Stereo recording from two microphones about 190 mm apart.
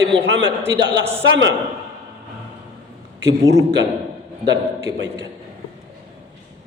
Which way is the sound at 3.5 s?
65° right (ahead or behind).